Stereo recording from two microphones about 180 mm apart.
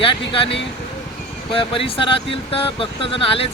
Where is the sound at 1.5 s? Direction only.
30° left (ahead or behind).